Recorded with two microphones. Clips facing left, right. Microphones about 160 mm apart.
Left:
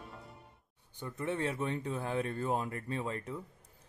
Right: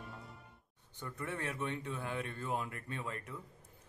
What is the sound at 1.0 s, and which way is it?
A man's voice, 25° left (ahead or behind).